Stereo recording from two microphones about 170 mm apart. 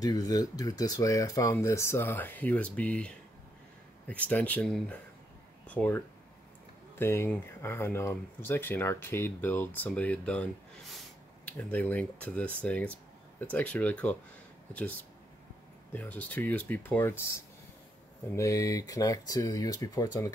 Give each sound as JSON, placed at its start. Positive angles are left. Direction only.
{"t": 0.0, "sound": "speech", "side_deg": 20}
{"t": 15.9, "sound": "speech", "side_deg": 10}
{"t": 18.3, "sound": "speech", "side_deg": 20}